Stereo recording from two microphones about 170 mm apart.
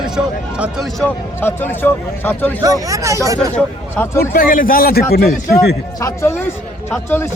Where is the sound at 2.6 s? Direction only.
20° right (ahead or behind).